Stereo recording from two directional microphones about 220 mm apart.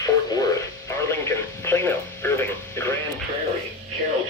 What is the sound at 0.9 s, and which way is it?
Music, 10° left (ahead or behind).